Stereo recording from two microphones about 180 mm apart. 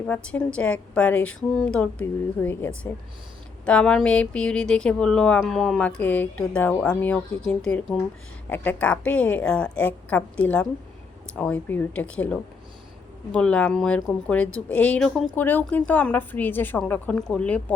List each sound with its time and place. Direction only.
0.1 s a woman's voice: 5° left (ahead or behind)